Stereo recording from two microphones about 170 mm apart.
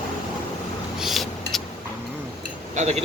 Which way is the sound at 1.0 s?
Centre (ahead or behind).